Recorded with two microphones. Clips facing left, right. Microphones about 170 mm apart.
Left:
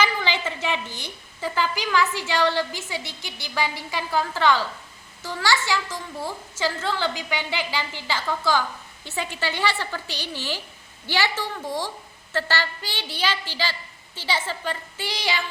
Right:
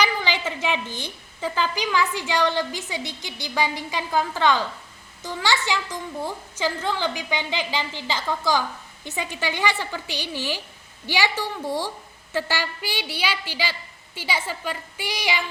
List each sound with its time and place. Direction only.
0.0 s a woman's voice: 15° right (ahead or behind)
11.6 s speech: 15° left (ahead or behind)
12.3 s a woman's voice: 15° right (ahead or behind)